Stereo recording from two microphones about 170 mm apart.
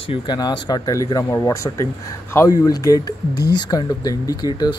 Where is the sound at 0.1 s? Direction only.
25° left (ahead or behind).